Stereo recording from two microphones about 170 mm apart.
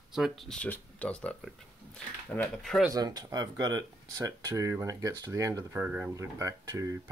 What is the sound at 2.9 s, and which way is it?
Speech, 25° right (ahead or behind).